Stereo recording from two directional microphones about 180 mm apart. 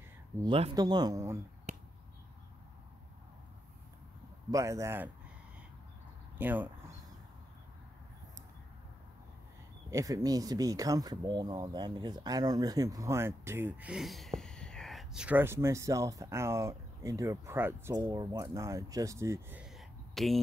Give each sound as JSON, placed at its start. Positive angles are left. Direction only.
{"t": 0.4, "sound": "speech", "side_deg": -25}
{"t": 4.5, "sound": "speech", "side_deg": -15}
{"t": 6.3, "sound": "speech", "side_deg": -10}
{"t": 9.8, "sound": "speech", "side_deg": -15}
{"t": 19.6, "sound": "a sound", "side_deg": 0}